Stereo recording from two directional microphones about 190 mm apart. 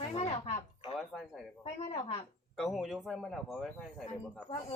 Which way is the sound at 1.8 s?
35° left (ahead or behind).